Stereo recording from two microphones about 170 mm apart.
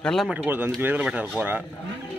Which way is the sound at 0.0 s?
5° left (ahead or behind).